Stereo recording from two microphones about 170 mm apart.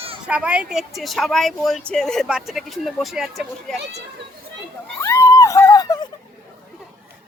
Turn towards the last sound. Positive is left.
turn(degrees=20)  # may be behind; listen again after turning